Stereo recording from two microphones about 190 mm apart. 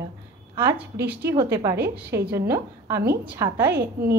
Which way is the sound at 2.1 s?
55° right (ahead or behind).